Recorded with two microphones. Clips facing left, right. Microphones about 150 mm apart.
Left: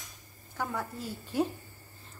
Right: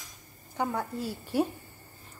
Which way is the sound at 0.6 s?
15° right (ahead or behind).